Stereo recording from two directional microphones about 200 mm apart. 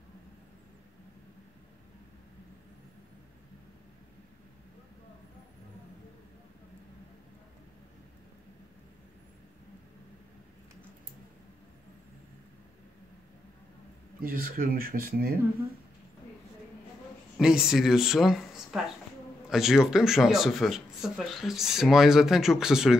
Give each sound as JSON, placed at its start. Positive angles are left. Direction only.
{"t": 14.2, "sound": "speech", "side_deg": -45}
{"t": 17.4, "sound": "speech", "side_deg": -5}